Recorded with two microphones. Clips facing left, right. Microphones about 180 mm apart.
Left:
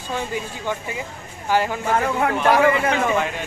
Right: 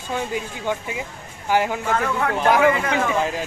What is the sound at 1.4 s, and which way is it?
Speech, 10° right (ahead or behind).